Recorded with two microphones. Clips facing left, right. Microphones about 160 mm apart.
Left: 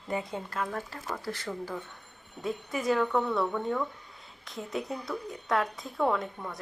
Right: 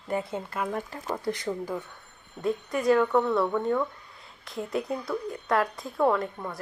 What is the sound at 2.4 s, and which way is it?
A woman's voice, centre (ahead or behind).